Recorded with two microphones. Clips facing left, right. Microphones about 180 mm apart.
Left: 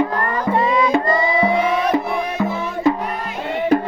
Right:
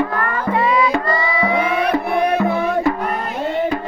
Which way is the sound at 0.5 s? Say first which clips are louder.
Right 1 dB; 40° left (ahead or behind).